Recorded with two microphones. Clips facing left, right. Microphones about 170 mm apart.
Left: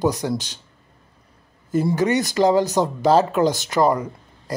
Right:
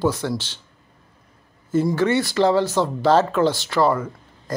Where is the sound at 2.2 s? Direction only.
15° left (ahead or behind).